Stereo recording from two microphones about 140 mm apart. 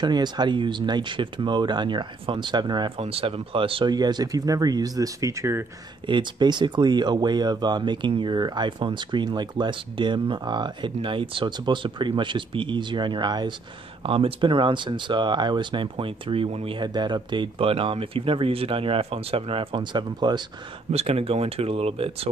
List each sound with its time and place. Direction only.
0.0 s speech: 30° right (ahead or behind)
3.0 s speech: 45° right (ahead or behind); by 5.7 s 20° right (ahead or behind)
6.0 s speech: 35° right (ahead or behind)
20.9 s speech: 45° right (ahead or behind)